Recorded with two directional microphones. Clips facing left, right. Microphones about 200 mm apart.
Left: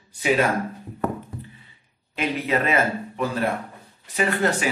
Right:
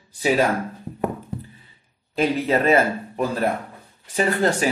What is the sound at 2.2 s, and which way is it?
Speech, 35° right (ahead or behind).